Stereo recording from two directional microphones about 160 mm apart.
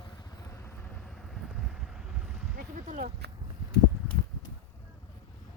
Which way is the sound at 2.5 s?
60° right (ahead or behind).